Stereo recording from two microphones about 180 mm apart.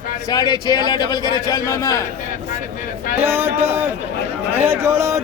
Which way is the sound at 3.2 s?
15° right (ahead or behind).